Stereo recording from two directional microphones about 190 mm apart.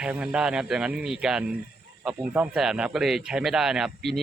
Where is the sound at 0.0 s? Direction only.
5° right (ahead or behind).